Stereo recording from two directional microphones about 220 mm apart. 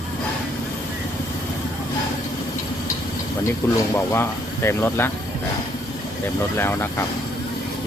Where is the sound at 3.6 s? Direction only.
10° left (ahead or behind).